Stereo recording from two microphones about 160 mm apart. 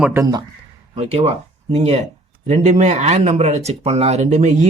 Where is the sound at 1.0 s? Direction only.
40° right (ahead or behind).